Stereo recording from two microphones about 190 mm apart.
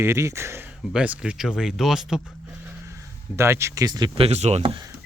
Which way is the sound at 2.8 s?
15° right (ahead or behind).